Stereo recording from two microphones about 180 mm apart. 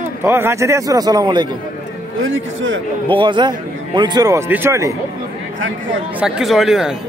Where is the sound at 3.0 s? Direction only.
25° right (ahead or behind).